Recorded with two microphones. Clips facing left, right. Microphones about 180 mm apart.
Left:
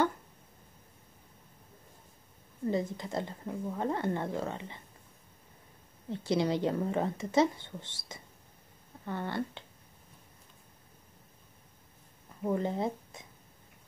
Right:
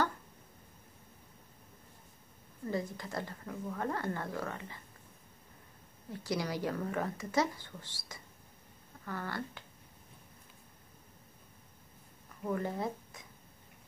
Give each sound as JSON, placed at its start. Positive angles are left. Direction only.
{"t": 2.6, "sound": "speech", "side_deg": 20}
{"t": 6.0, "sound": "speech", "side_deg": 25}
{"t": 12.4, "sound": "speech", "side_deg": 20}